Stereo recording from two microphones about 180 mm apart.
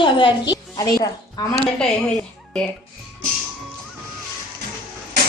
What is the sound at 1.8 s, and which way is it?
Speech, 5° left (ahead or behind).